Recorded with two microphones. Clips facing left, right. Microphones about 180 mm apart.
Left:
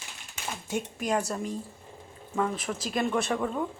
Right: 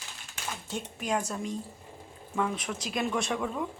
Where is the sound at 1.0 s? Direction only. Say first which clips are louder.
Left 1 dB; 10° left (ahead or behind).